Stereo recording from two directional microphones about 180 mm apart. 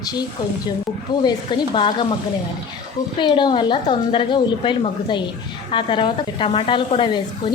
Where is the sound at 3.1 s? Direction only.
25° left (ahead or behind).